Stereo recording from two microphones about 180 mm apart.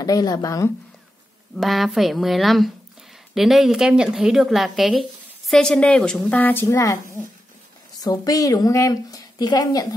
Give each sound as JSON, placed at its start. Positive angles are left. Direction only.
{"t": 0.0, "sound": "a woman's voice", "side_deg": 20}
{"t": 1.6, "sound": "a woman's voice", "side_deg": 0}